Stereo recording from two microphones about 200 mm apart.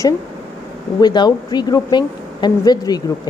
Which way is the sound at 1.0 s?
20° left (ahead or behind).